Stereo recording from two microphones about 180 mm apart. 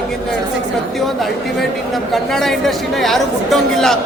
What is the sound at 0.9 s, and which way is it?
Speech, centre (ahead or behind).